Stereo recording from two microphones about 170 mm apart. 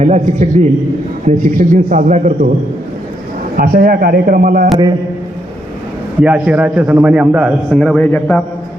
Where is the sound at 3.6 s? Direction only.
60° right (ahead or behind).